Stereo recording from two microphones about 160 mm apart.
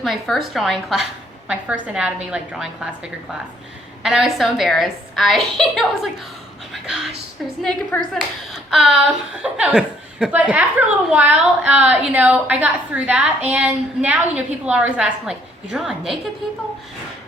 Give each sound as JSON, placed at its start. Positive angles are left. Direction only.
{"t": 0.0, "sound": "a woman's voice", "side_deg": 0}
{"t": 7.6, "sound": "a woman's voice", "side_deg": 5}